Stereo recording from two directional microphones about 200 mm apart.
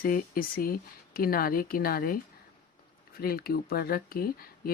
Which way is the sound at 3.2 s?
50° left (ahead or behind).